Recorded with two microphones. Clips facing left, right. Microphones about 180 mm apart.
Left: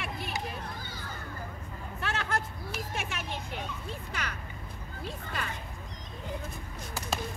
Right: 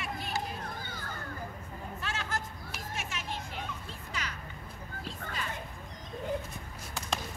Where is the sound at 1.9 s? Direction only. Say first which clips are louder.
Left 5 dB; 60° left (ahead or behind).